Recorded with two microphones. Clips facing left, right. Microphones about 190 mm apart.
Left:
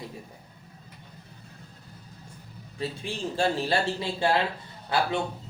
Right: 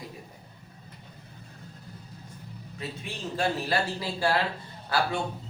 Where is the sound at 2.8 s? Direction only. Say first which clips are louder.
Left 5 dB; 30° left (ahead or behind).